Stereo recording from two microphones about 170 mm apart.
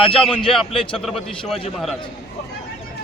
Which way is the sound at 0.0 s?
30° left (ahead or behind).